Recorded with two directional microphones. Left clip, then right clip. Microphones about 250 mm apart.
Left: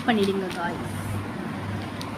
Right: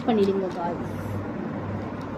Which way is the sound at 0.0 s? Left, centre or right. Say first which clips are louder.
Right 1 dB; left.